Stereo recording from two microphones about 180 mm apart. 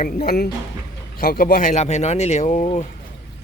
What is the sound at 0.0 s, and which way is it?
Speech, 55° left (ahead or behind).